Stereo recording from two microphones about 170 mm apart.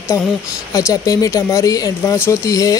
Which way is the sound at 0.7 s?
20° left (ahead or behind).